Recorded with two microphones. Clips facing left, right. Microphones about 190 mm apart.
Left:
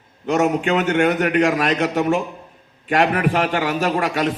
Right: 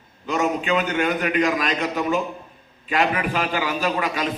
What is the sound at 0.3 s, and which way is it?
A man's voice, 70° left (ahead or behind).